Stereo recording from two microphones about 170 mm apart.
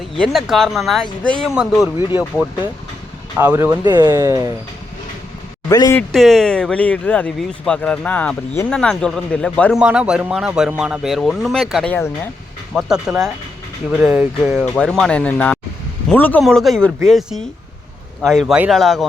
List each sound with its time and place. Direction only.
0.2 s speech: centre (ahead or behind)
3.3 s speech: 15° right (ahead or behind)
5.6 s speech: 20° left (ahead or behind)
6.0 s speech: centre (ahead or behind)
9.7 s speech: 5° right (ahead or behind); by 12.3 s 10° left (ahead or behind)
12.7 s speech: 5° right (ahead or behind)
14.6 s speech: 5° left (ahead or behind)